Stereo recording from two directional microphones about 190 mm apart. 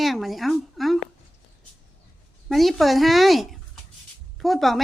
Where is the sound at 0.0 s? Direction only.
Centre (ahead or behind).